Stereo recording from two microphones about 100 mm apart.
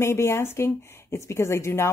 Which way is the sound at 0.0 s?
25° left (ahead or behind).